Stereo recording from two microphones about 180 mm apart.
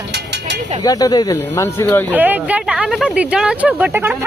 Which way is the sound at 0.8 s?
20° left (ahead or behind).